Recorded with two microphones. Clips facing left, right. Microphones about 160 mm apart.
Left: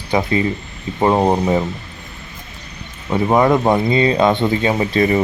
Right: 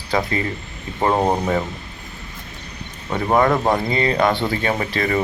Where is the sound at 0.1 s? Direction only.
20° left (ahead or behind).